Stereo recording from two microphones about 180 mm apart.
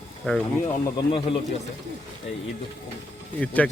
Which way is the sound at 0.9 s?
30° left (ahead or behind).